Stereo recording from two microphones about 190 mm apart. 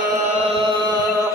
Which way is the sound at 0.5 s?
25° right (ahead or behind).